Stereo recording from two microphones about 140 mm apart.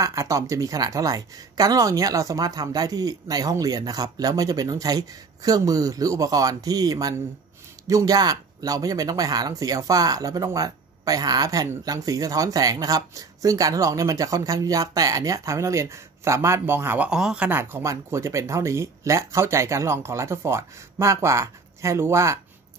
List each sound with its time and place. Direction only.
0.0 s speech: 25° right (ahead or behind)